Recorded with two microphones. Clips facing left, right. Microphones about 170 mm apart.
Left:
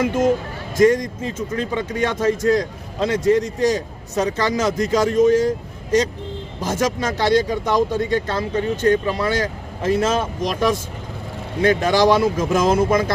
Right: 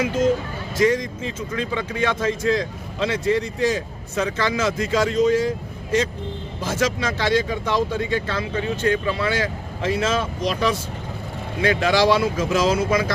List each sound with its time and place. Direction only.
0.0 s speech: 50° left (ahead or behind)